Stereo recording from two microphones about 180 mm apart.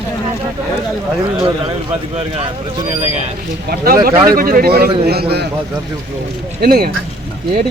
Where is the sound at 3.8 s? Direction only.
55° right (ahead or behind).